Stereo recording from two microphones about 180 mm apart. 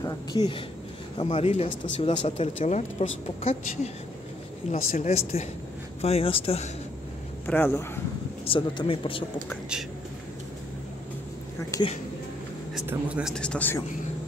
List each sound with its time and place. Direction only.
0.0 s speech: 20° left (ahead or behind)
7.4 s speech: 10° left (ahead or behind)
8.5 s a man's voice: 30° left (ahead or behind)
11.7 s speech: 15° left (ahead or behind)
12.8 s speech: 5° right (ahead or behind)
13.3 s a man's voice: 5° left (ahead or behind)